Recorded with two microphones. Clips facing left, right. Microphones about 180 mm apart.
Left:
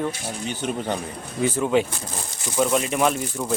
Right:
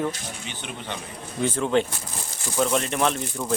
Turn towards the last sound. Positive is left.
turn(degrees=5)  # may be behind; listen again after turning